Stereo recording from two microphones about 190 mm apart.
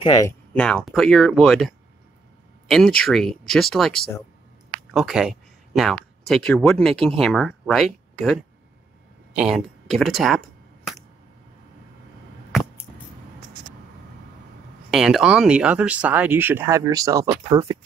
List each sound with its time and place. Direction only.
0.0 s speech: 20° left (ahead or behind)
0.5 s speech: 5° left (ahead or behind)
3.1 s speech: centre (ahead or behind)
9.3 s a sound: 5° right (ahead or behind)
14.9 s speech: 5° right (ahead or behind); by 17.7 s 20° right (ahead or behind)